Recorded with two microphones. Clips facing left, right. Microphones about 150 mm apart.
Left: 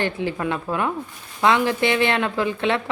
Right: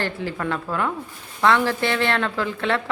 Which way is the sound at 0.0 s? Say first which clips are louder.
Left 2 dB; 20° left (ahead or behind).